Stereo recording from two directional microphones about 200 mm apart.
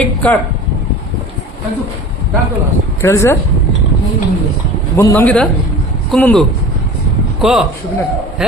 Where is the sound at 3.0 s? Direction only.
15° left (ahead or behind).